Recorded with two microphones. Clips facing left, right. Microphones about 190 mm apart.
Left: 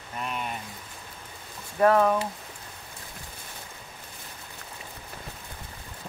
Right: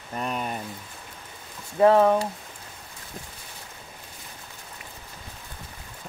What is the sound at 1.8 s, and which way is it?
Speech, 30° right (ahead or behind).